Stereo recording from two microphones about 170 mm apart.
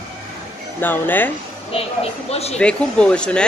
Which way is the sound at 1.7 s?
35° left (ahead or behind).